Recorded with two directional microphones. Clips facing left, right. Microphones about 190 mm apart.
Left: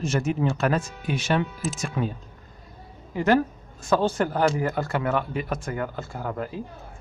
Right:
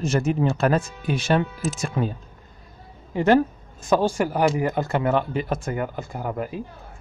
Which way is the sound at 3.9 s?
10° right (ahead or behind).